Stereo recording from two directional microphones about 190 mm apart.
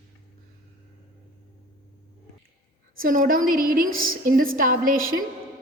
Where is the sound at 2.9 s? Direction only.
45° right (ahead or behind).